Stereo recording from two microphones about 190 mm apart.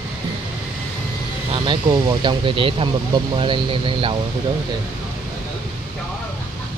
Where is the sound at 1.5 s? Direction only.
25° right (ahead or behind).